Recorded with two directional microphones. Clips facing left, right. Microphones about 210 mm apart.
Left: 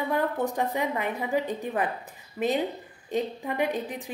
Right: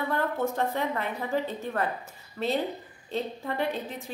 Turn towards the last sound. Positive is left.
turn(degrees=15)  # may be behind; listen again after turning